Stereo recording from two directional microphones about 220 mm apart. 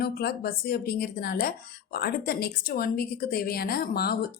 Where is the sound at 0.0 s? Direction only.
45° left (ahead or behind).